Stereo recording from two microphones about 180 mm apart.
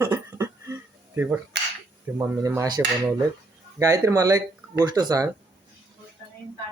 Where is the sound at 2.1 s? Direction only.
10° right (ahead or behind).